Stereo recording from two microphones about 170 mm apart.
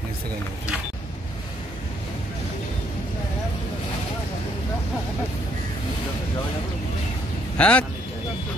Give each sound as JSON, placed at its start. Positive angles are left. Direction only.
{"t": 7.5, "sound": "a man's voice", "side_deg": 10}